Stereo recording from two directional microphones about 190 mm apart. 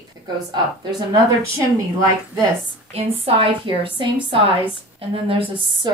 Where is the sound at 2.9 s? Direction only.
30° right (ahead or behind).